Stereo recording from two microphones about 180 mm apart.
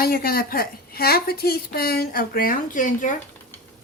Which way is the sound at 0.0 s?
55° left (ahead or behind).